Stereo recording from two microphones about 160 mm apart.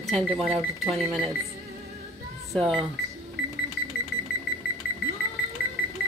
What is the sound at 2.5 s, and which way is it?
Speech, centre (ahead or behind).